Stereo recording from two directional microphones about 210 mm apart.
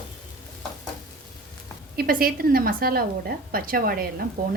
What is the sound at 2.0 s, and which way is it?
A woman's voice, 45° right (ahead or behind).